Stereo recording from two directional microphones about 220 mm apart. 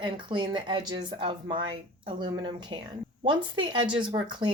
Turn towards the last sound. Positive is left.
turn(degrees=-20)  # may be behind; listen again after turning